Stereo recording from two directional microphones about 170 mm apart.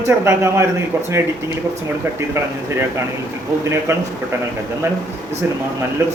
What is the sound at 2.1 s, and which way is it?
Speech, 15° right (ahead or behind).